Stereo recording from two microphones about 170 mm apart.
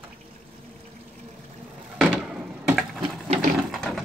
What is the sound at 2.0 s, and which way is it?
Wood, 5° right (ahead or behind).